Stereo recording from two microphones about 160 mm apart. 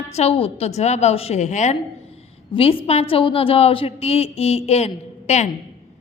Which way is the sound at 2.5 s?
35° left (ahead or behind).